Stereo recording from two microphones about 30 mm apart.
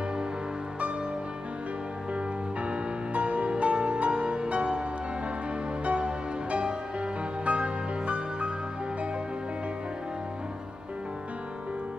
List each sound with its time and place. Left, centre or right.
2.1 s music: right
5.9 s music: right